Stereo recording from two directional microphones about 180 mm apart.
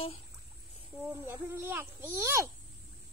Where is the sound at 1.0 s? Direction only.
10° right (ahead or behind).